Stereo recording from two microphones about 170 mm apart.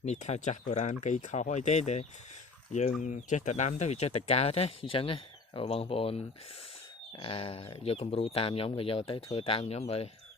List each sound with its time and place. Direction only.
0.0 s speech: 40° left (ahead or behind)